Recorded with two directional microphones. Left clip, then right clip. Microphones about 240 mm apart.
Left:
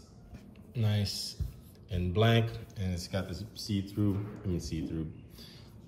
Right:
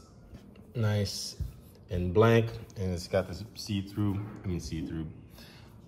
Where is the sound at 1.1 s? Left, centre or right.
Centre.